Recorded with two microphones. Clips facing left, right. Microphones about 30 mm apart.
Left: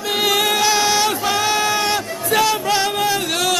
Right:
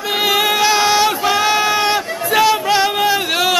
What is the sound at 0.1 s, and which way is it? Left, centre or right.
Music, centre.